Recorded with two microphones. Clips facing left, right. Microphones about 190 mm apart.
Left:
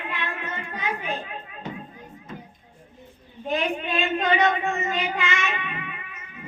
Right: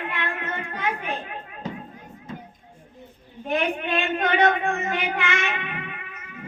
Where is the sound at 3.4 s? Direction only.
60° right (ahead or behind).